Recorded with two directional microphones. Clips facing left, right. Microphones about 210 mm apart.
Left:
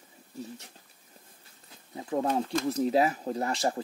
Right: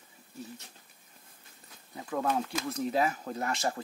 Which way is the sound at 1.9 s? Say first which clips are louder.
Left 3 dB; 25° left (ahead or behind).